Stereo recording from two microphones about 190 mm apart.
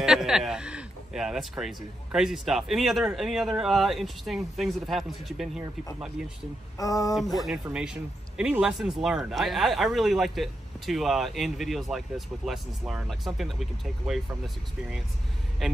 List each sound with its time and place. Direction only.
0.0 s a sound: centre (ahead or behind)
1.6 s speech: centre (ahead or behind)
6.8 s speech: 20° left (ahead or behind)
7.4 s speech: 5° right (ahead or behind)
15.6 s speech: centre (ahead or behind)